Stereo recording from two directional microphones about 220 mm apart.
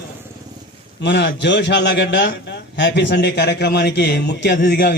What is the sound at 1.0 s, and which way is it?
A man's voice, 50° left (ahead or behind).